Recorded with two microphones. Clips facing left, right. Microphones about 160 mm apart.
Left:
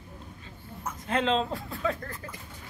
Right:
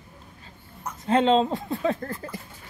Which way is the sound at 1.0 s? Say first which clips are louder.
Right 7 dB; 25° right (ahead or behind).